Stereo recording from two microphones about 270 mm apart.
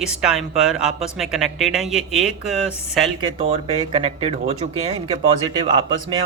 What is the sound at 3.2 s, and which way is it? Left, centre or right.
A man's voice, right.